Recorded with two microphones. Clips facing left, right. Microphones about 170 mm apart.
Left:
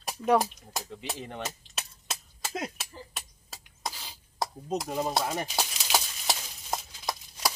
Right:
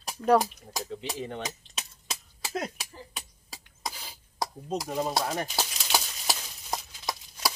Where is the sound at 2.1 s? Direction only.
Centre (ahead or behind).